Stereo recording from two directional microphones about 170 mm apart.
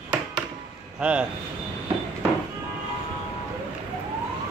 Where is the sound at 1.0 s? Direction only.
5° right (ahead or behind).